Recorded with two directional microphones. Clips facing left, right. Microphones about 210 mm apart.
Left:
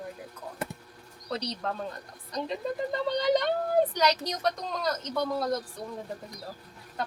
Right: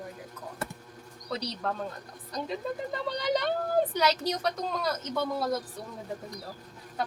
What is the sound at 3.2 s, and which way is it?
A woman's voice, centre (ahead or behind).